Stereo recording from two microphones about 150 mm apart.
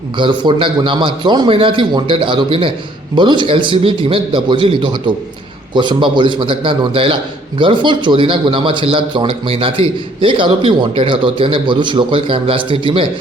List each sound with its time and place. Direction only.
0.2 s speech: 30° right (ahead or behind)